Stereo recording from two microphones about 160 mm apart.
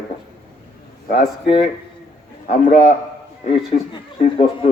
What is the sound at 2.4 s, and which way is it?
Speech, 50° left (ahead or behind).